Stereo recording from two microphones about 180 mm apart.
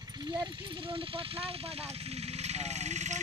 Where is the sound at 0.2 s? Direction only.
25° right (ahead or behind).